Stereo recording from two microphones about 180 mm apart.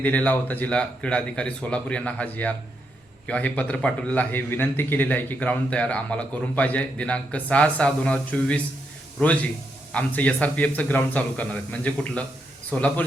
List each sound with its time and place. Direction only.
0.0 s a man's voice: 10° left (ahead or behind)